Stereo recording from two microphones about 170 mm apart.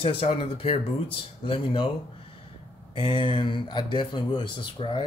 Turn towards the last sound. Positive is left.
turn(degrees=30)  # may be behind; listen again after turning